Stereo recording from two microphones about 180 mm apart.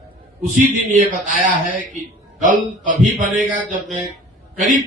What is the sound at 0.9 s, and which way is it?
Speech, 45° right (ahead or behind).